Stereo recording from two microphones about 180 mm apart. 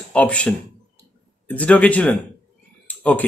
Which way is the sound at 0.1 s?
5° left (ahead or behind).